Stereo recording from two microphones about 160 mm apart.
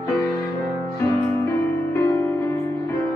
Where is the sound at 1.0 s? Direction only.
15° left (ahead or behind).